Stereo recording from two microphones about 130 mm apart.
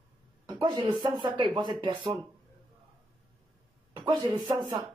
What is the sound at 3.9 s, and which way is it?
Speech, 35° right (ahead or behind).